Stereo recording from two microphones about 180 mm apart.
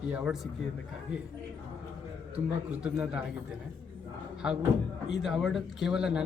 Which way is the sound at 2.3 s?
5° right (ahead or behind).